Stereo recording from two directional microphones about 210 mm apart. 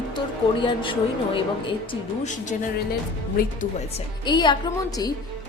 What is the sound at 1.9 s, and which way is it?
Speech, 35° left (ahead or behind).